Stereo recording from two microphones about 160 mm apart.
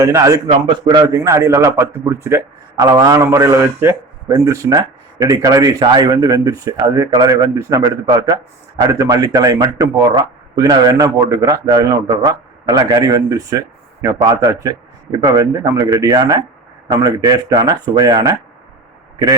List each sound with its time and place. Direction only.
0.0 s a man's voice: 20° right (ahead or behind)